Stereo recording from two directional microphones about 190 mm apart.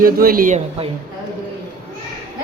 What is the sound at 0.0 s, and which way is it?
Speech, 50° right (ahead or behind).